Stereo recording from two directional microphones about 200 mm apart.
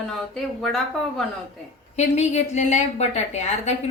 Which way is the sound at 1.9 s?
35° left (ahead or behind).